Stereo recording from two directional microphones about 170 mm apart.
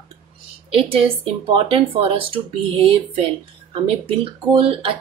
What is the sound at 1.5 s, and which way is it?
A woman's voice, 30° right (ahead or behind).